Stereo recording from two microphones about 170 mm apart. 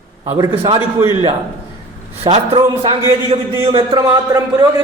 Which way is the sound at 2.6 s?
20° right (ahead or behind).